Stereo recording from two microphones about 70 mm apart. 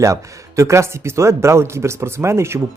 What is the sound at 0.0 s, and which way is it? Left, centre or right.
Speech, right.